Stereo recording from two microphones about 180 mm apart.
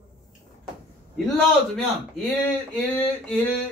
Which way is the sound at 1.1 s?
Centre (ahead or behind).